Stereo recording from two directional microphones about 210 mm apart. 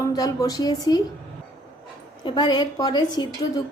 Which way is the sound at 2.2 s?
20° left (ahead or behind).